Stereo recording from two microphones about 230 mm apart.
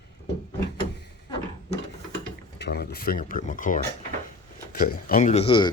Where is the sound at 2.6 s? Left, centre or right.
Left.